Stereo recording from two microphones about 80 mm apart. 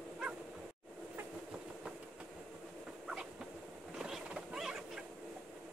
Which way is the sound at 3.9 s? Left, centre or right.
Centre.